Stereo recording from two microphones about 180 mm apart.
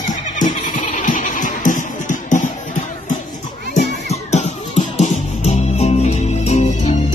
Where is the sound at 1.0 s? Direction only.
45° left (ahead or behind).